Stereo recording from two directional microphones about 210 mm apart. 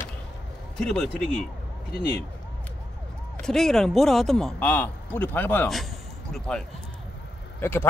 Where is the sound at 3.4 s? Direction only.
Centre (ahead or behind).